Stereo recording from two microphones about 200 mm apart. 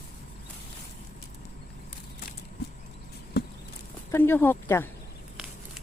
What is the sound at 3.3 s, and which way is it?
Horse, 55° left (ahead or behind).